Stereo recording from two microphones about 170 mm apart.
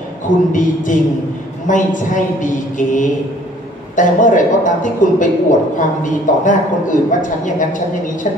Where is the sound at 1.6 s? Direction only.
50° left (ahead or behind).